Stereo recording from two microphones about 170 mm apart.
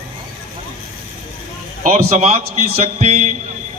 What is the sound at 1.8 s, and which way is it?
A man's voice, 40° right (ahead or behind).